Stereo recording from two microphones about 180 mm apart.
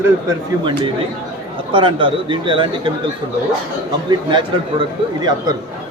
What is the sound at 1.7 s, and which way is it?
Speech, 25° right (ahead or behind).